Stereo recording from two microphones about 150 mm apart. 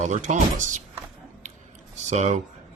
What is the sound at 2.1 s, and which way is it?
Speech, 50° right (ahead or behind).